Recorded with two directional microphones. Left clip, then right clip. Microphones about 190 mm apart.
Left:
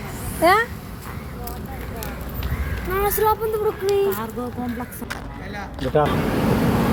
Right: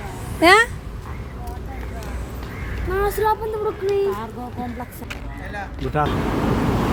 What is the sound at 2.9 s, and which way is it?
Speech, 15° right (ahead or behind).